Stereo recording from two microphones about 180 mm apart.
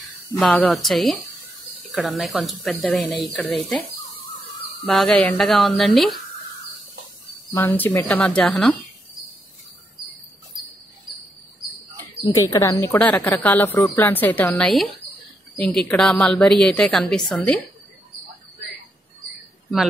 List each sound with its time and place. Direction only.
0.4 s a woman's voice: 5° left (ahead or behind)
4.8 s a woman's voice: 5° left (ahead or behind)
7.5 s speech: 10° left (ahead or behind)
12.4 s a woman's voice: 20° left (ahead or behind)